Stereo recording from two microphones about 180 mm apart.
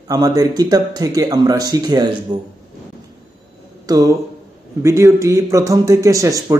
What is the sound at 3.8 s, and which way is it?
A man's voice, 20° right (ahead or behind).